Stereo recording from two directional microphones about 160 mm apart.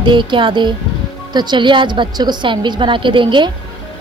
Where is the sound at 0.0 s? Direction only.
30° right (ahead or behind).